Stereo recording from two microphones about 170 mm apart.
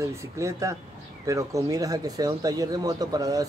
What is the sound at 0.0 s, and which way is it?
Speech, 15° right (ahead or behind).